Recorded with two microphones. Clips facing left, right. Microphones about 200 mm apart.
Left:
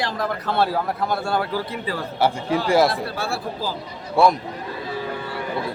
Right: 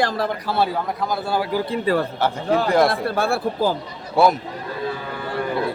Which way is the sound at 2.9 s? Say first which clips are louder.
Right 5 dB; 55° right (ahead or behind).